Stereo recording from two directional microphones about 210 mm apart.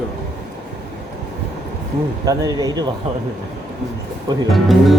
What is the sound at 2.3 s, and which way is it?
Speech, 15° right (ahead or behind).